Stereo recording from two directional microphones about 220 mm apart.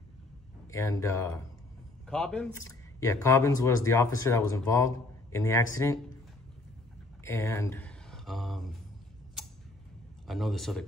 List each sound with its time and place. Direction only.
0.7 s speech: 15° left (ahead or behind)
2.0 s a man's voice: 5° left (ahead or behind)
2.5 s speech: 15° left (ahead or behind)
7.2 s speech: 10° left (ahead or behind)
10.2 s a man's voice: centre (ahead or behind)